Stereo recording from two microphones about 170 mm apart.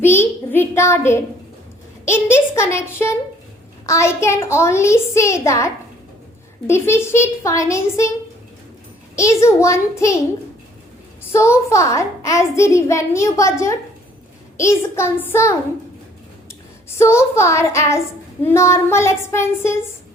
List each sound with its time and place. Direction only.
0.0 s a sound: 15° left (ahead or behind)
2.0 s a child's voice: 15° left (ahead or behind)
9.1 s a child's voice: 15° left (ahead or behind)
11.3 s a child's voice: 15° left (ahead or behind)
17.0 s a child's voice: 15° left (ahead or behind)